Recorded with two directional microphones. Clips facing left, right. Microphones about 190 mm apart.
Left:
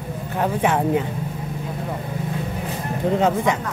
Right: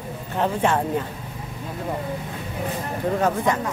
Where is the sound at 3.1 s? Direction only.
20° left (ahead or behind).